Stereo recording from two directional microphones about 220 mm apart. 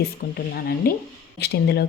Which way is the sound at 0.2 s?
45° left (ahead or behind).